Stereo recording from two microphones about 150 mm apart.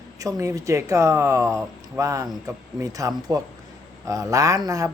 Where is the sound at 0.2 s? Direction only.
20° right (ahead or behind).